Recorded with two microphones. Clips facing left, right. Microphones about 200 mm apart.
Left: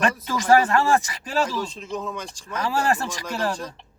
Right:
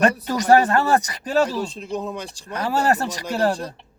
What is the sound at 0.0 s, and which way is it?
Speech, 40° right (ahead or behind).